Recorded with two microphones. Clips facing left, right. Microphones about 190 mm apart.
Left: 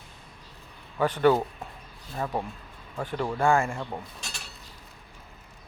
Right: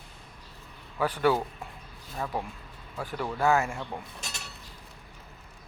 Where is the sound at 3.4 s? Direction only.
5° right (ahead or behind).